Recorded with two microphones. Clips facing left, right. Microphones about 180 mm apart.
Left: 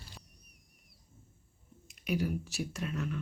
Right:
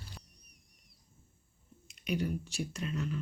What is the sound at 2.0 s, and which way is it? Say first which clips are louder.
Speech: left 1 dB; centre (ahead or behind).